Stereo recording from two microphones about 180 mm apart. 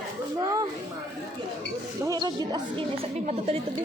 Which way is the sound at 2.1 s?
20° right (ahead or behind).